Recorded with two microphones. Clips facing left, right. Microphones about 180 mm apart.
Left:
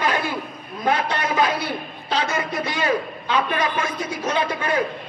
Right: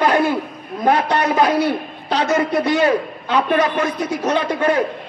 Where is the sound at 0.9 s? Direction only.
40° right (ahead or behind).